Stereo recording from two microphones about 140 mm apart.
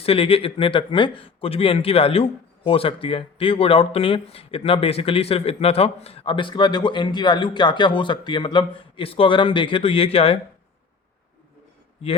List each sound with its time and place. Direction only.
0.0 s speech: 40° left (ahead or behind)